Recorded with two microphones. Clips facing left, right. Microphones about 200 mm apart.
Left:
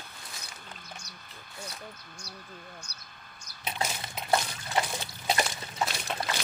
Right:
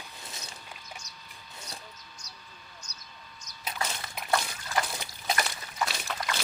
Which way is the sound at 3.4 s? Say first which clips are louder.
Left 2 dB; 30° left (ahead or behind).